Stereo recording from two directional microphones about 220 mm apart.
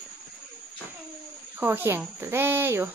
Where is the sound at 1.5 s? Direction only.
10° right (ahead or behind).